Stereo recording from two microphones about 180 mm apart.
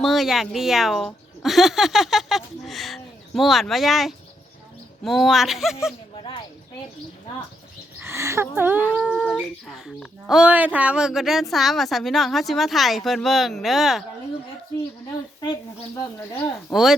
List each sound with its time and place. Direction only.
0.0 s speech: centre (ahead or behind)
6.1 s a sound: 25° left (ahead or behind)
7.9 s a woman's voice: 15° right (ahead or behind)
8.9 s humming: 10° right (ahead or behind)
9.2 s speech: 5° left (ahead or behind)
16.7 s speech: centre (ahead or behind)